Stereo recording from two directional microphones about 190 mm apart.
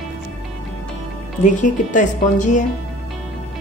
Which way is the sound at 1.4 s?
40° left (ahead or behind).